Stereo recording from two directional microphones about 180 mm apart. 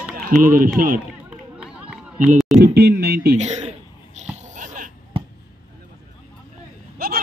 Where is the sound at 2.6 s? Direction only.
60° right (ahead or behind).